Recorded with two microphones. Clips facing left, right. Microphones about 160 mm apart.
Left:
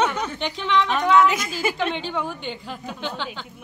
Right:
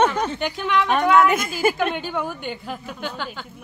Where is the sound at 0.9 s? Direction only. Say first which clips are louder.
Right 2 dB; 50° right (ahead or behind).